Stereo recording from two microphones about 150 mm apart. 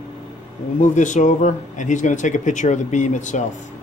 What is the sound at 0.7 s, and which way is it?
Speech, 55° left (ahead or behind).